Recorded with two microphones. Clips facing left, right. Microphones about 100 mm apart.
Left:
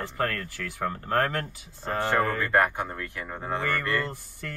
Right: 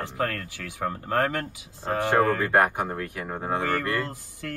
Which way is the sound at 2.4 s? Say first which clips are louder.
Right 2 dB; 10° right (ahead or behind).